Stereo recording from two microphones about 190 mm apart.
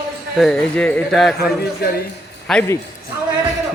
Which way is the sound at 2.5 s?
Centre (ahead or behind).